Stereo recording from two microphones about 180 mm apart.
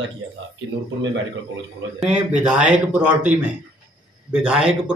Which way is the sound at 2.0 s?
5° right (ahead or behind).